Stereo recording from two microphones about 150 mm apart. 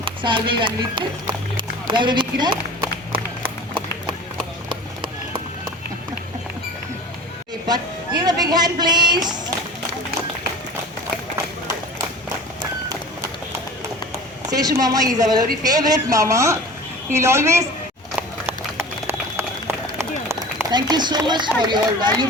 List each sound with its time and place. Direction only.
0.0 s speech: 35° right (ahead or behind)
7.7 s music: 25° right (ahead or behind)
14.5 s speech: 25° right (ahead or behind)
18.2 s run: 15° right (ahead or behind)
20.7 s speech: 30° right (ahead or behind)